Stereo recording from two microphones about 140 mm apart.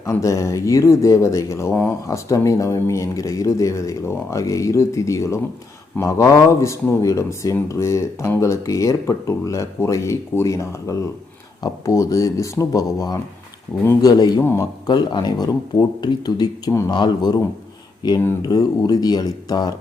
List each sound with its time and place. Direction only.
0.0 s speech: 20° left (ahead or behind)
14.8 s speech: 30° left (ahead or behind)